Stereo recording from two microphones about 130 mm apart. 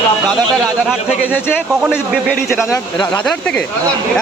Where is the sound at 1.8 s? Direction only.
5° right (ahead or behind).